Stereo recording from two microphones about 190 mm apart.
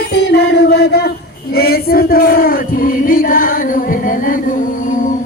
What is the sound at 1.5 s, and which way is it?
Music, 55° left (ahead or behind).